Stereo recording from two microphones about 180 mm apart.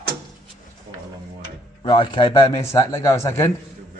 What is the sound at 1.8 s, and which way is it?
Speech, 25° left (ahead or behind).